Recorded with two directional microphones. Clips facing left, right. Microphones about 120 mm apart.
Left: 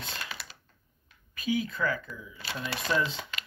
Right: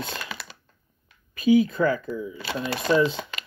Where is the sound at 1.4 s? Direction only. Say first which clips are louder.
Right 11 dB; 30° right (ahead or behind).